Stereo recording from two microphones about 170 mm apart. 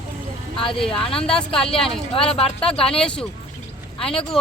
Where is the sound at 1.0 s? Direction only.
35° left (ahead or behind).